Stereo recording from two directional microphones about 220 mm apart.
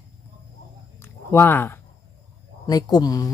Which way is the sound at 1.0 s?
10° left (ahead or behind).